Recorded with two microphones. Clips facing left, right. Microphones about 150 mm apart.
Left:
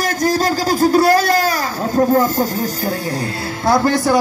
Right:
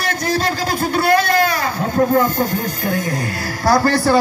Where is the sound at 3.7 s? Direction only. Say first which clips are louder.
Even; 20° left (ahead or behind).